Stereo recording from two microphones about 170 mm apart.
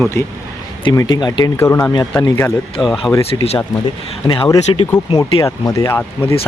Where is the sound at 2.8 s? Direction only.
Centre (ahead or behind).